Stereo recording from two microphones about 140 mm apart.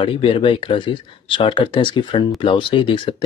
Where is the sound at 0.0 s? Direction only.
40° left (ahead or behind).